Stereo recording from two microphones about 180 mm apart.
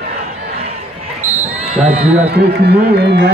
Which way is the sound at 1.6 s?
35° right (ahead or behind).